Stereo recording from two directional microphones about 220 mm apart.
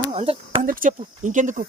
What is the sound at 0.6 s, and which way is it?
Speech, 35° right (ahead or behind).